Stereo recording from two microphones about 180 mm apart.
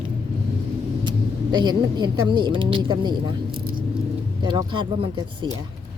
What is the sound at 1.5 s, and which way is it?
A woman's voice, 25° right (ahead or behind).